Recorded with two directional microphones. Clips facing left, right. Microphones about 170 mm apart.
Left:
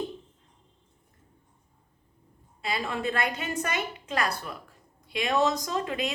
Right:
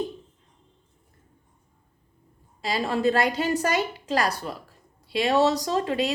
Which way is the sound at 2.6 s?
35° right (ahead or behind).